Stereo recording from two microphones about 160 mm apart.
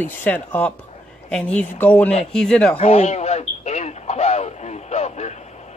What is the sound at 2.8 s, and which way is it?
Radio, 40° left (ahead or behind).